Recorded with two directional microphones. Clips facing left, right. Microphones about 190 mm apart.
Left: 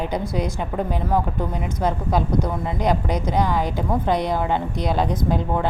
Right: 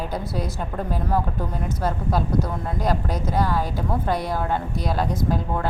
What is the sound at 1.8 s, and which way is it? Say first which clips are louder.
Speech: left 3 dB; 5° right (ahead or behind).